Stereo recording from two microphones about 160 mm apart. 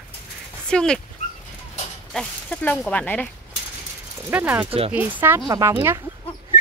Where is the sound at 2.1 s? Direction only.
10° left (ahead or behind).